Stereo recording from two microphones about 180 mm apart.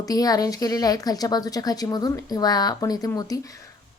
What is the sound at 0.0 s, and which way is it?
A woman's voice, 20° left (ahead or behind).